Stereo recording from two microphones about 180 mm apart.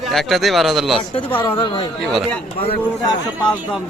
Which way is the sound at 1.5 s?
30° left (ahead or behind).